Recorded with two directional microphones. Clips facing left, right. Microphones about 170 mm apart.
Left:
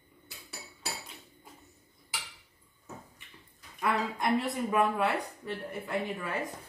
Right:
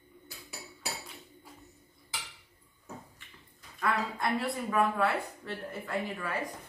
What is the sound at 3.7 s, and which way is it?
Speech, 20° left (ahead or behind).